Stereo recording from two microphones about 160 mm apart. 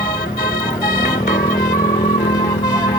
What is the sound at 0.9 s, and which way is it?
Music, 65° left (ahead or behind).